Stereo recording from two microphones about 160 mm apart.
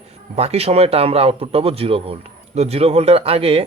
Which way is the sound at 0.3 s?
40° right (ahead or behind).